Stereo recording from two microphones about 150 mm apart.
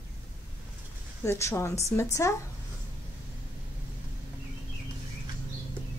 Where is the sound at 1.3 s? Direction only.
20° left (ahead or behind).